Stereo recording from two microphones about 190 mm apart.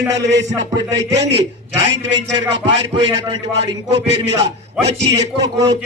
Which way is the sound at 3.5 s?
65° right (ahead or behind).